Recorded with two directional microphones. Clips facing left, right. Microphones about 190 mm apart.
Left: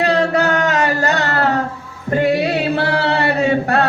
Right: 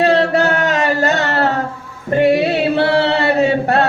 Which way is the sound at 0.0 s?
25° right (ahead or behind).